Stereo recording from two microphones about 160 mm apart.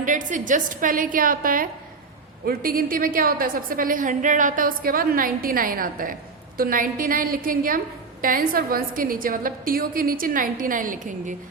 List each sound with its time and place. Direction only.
0.0 s a woman's voice: 55° right (ahead or behind)